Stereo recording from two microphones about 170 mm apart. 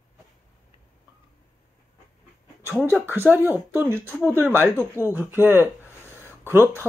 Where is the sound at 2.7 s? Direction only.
10° right (ahead or behind).